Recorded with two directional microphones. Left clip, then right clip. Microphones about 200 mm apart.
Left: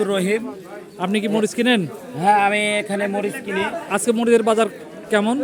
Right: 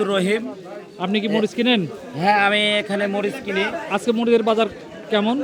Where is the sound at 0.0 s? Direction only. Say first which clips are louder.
Even; 5° left (ahead or behind).